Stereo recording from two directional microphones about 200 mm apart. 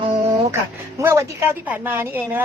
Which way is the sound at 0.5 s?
15° right (ahead or behind).